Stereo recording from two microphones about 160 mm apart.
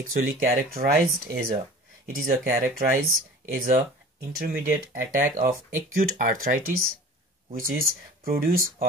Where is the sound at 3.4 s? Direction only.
55° right (ahead or behind).